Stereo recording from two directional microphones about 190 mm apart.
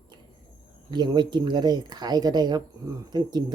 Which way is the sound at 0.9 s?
25° right (ahead or behind).